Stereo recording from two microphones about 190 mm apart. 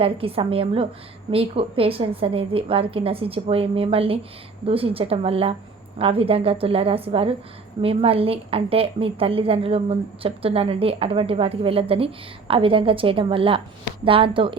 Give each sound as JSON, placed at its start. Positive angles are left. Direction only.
{"t": 0.0, "sound": "a woman's voice", "side_deg": -30}